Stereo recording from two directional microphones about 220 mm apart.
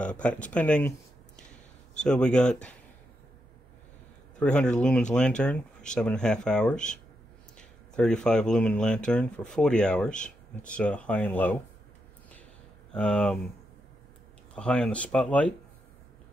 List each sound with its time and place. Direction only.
0.0 s speech: 5° left (ahead or behind)
2.0 s speech: 5° left (ahead or behind)
4.4 s speech: 5° left (ahead or behind)
12.9 s speech: 5° left (ahead or behind)
14.5 s speech: 5° left (ahead or behind)